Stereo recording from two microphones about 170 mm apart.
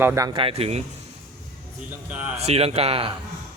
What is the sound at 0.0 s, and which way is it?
Speech, 15° right (ahead or behind).